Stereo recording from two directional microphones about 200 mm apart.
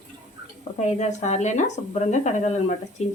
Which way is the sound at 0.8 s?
35° left (ahead or behind).